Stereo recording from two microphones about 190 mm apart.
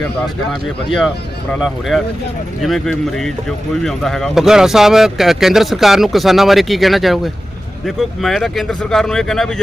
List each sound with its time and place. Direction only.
0.9 s speech: centre (ahead or behind)